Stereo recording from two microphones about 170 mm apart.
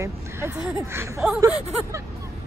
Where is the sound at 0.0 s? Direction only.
15° right (ahead or behind).